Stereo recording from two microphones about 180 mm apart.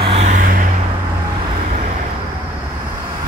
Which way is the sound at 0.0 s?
35° right (ahead or behind).